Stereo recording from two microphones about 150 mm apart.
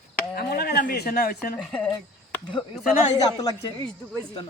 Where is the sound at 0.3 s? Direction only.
90° left.